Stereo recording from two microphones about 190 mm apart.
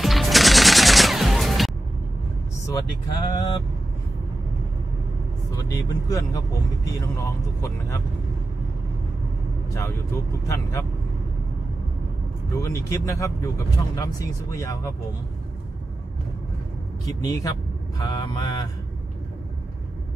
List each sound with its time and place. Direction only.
0.0 s music: centre (ahead or behind)
3.3 s speech: 25° left (ahead or behind)
5.6 s speech: 20° left (ahead or behind)
10.4 s speech: 15° left (ahead or behind)
12.5 s speech: 15° left (ahead or behind)
17.3 s speech: 20° left (ahead or behind)